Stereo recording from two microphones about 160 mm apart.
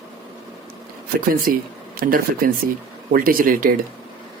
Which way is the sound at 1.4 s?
60° right (ahead or behind).